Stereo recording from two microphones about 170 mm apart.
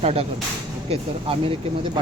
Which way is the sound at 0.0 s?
40° right (ahead or behind).